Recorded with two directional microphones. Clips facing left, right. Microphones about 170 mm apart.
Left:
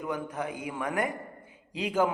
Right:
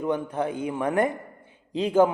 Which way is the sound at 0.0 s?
30° right (ahead or behind).